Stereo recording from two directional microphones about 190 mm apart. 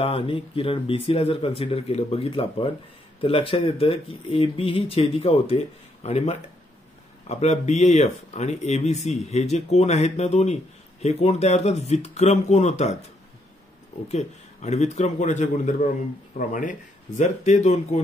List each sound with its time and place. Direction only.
0.0 s speech: 30° left (ahead or behind)
14.0 s speech: 35° left (ahead or behind)